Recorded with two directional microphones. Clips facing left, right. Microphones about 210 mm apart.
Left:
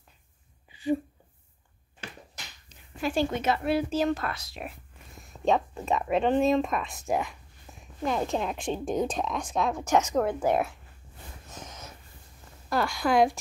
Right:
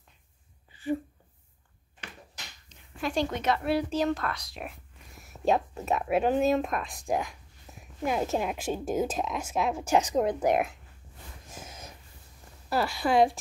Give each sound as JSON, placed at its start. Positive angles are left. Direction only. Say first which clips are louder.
{"t": 3.0, "sound": "speech", "louder": "left 2 dB", "side_deg": 5}
{"t": 9.8, "sound": "a woman's voice", "louder": "even", "side_deg": -30}
{"t": 10.1, "sound": "speech", "louder": "even", "side_deg": -15}
{"t": 11.5, "sound": "a sound", "louder": "left 1 dB", "side_deg": -10}
{"t": 12.6, "sound": "speech", "louder": "left 1 dB", "side_deg": -5}